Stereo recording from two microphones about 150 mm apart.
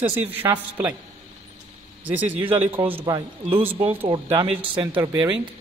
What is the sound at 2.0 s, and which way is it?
Speech, 10° right (ahead or behind).